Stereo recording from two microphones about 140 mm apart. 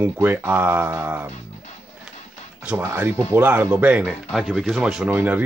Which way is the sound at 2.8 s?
15° right (ahead or behind).